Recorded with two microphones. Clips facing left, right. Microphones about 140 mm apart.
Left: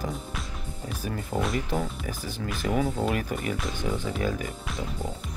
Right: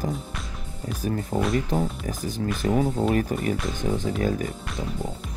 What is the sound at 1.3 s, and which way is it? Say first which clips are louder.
Speech: right 3 dB; centre (ahead or behind).